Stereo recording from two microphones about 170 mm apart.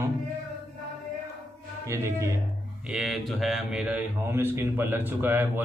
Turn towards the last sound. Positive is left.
turn(degrees=-10)  # may be behind; listen again after turning